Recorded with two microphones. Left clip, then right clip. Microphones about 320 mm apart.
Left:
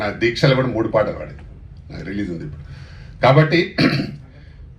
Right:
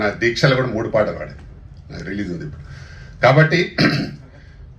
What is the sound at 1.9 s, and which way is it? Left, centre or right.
A man's voice, left.